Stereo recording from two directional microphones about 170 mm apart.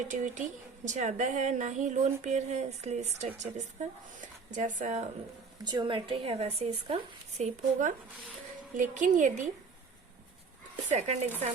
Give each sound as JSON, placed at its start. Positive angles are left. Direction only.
{"t": 0.0, "sound": "speech", "side_deg": -45}
{"t": 5.6, "sound": "a woman's voice", "side_deg": -25}
{"t": 10.8, "sound": "a woman's voice", "side_deg": -40}